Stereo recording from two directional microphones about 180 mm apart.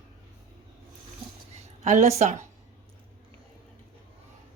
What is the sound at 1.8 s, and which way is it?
Speech, 40° right (ahead or behind).